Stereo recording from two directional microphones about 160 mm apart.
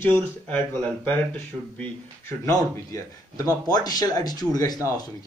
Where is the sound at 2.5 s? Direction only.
20° left (ahead or behind).